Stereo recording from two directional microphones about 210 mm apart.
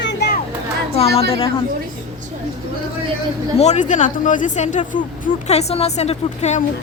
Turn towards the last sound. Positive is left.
turn(degrees=30)  # may be behind; listen again after turning